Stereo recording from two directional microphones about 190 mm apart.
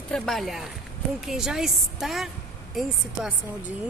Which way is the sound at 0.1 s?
Centre (ahead or behind).